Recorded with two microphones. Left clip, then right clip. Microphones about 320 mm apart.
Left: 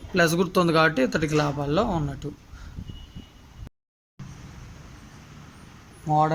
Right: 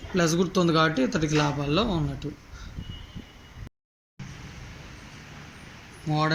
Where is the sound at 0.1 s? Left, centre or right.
Left.